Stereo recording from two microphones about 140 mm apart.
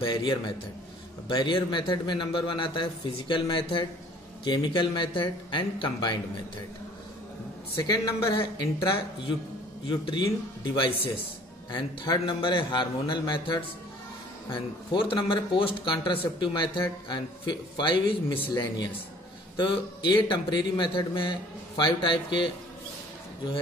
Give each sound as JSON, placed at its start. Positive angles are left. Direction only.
{"t": 0.0, "sound": "speech", "side_deg": 30}
{"t": 7.8, "sound": "speech", "side_deg": 30}
{"t": 9.8, "sound": "speech", "side_deg": 30}